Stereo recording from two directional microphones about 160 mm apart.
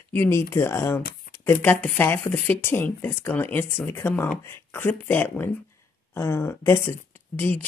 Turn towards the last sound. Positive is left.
turn(degrees=10)  # may be behind; listen again after turning